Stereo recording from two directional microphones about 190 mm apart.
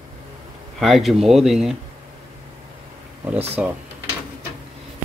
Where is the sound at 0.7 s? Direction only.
Centre (ahead or behind).